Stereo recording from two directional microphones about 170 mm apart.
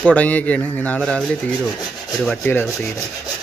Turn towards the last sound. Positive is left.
turn(degrees=20)  # may be behind; listen again after turning